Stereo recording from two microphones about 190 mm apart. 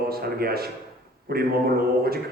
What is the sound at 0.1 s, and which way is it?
Speech, 55° right (ahead or behind).